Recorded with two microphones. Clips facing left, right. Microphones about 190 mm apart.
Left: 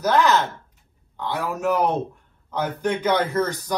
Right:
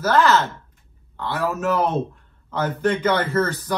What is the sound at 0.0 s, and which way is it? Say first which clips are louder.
A man's voice: right 1 dB; 15° left (ahead or behind).